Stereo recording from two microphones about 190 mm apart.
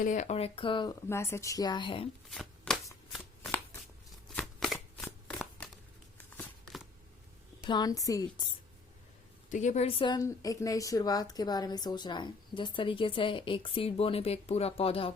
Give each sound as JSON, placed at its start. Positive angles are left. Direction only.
{"t": 0.0, "sound": "speech", "side_deg": 40}
{"t": 1.0, "sound": "a woman's voice", "side_deg": 15}
{"t": 2.3, "sound": "shuffling cards", "side_deg": 0}
{"t": 6.3, "sound": "a sound", "side_deg": 0}
{"t": 7.7, "sound": "a woman's voice", "side_deg": 20}
{"t": 9.5, "sound": "a woman's voice", "side_deg": 40}